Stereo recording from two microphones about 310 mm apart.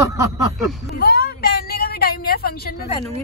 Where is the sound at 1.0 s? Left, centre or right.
Left.